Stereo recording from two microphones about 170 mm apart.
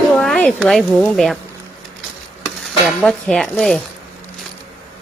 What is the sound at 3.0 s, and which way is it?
Speech, 5° left (ahead or behind).